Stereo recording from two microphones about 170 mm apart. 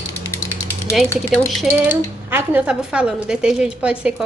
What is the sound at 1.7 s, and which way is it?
Speech, 10° right (ahead or behind).